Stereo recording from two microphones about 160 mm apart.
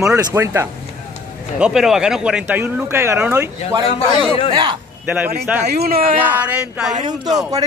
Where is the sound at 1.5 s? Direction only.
5° right (ahead or behind); by 4.8 s 25° right (ahead or behind).